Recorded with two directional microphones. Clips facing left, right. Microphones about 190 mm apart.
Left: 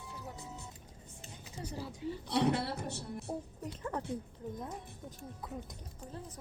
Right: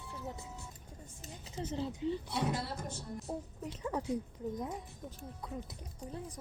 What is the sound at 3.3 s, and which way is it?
Speech, 10° left (ahead or behind).